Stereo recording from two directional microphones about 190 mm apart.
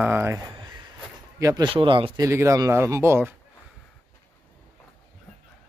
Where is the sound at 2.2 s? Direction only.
15° right (ahead or behind).